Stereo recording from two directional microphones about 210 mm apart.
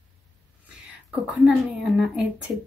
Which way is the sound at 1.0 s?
5° right (ahead or behind).